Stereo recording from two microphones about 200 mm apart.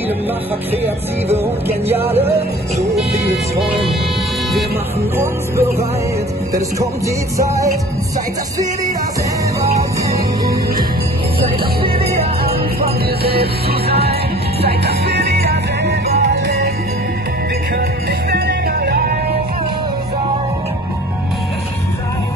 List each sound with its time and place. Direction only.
1.9 s music: 10° right (ahead or behind)
5.1 s music: 10° right (ahead or behind)
7.3 s music: 15° right (ahead or behind)
13.2 s music: 50° right (ahead or behind)
18.3 s music: 55° right (ahead or behind)